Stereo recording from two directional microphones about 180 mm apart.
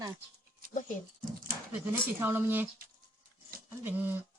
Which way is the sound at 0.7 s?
45° left (ahead or behind).